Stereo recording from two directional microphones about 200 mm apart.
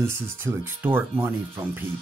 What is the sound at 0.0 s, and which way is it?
Speech, 10° right (ahead or behind).